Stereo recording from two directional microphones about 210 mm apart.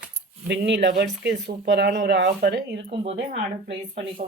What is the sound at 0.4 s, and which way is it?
Speech, 55° right (ahead or behind).